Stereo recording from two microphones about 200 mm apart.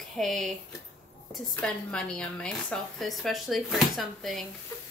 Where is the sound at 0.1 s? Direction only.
Centre (ahead or behind).